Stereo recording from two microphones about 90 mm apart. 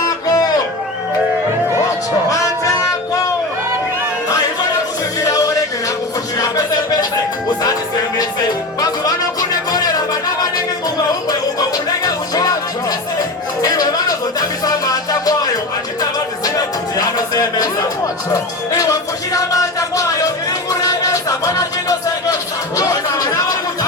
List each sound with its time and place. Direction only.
0.0 s music: 40° left (ahead or behind)
2.3 s music: 35° left (ahead or behind)
5.2 s music: 40° left (ahead or behind)
8.8 s music: 45° left (ahead or behind)
13.6 s music: 45° left (ahead or behind)
16.0 s music: 45° left (ahead or behind)
17.2 s speech: 45° left (ahead or behind)
20.7 s a sound: 40° left (ahead or behind)
22.8 s speech: 40° left (ahead or behind)